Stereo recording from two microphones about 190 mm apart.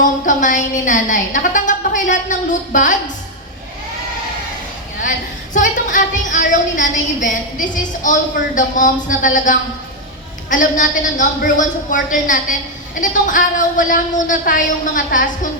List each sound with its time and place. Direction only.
0.3 s a woman's voice: 45° left (ahead or behind)
5.5 s a woman's voice: 45° left (ahead or behind)